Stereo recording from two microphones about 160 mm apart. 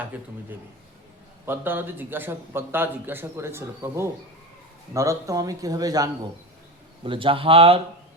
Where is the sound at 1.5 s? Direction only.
15° right (ahead or behind).